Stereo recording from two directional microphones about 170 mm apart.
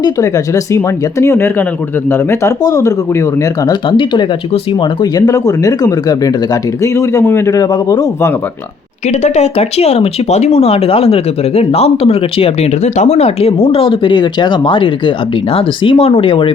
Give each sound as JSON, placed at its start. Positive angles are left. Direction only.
{"t": 0.0, "sound": "speech", "side_deg": 20}
{"t": 9.0, "sound": "speech", "side_deg": 40}